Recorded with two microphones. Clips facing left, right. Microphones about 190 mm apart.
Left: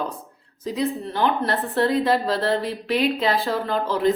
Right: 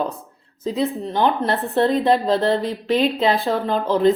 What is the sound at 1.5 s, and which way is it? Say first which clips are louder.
A woman's voice: right 3 dB; 25° right (ahead or behind).